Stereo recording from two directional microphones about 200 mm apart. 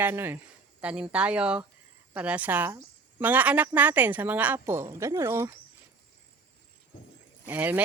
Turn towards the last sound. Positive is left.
turn(degrees=-10)  # may be behind; listen again after turning